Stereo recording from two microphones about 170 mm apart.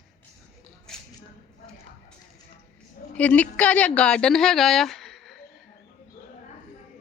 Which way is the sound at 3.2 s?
10° left (ahead or behind).